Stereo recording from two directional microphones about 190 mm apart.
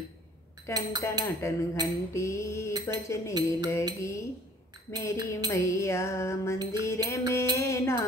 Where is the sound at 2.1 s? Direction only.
15° left (ahead or behind).